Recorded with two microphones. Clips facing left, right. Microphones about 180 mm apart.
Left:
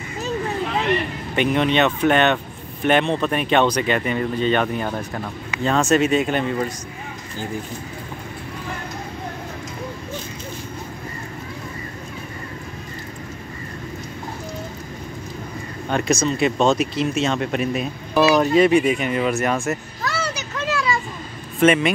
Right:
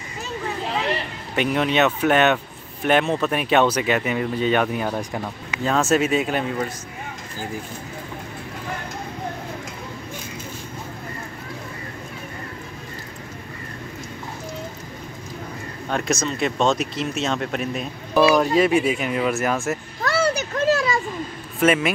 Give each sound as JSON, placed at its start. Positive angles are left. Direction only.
{"t": 1.3, "sound": "speech", "side_deg": 0}
{"t": 15.9, "sound": "speech", "side_deg": 0}
{"t": 20.0, "sound": "a sound", "side_deg": -55}
{"t": 21.5, "sound": "speech", "side_deg": 0}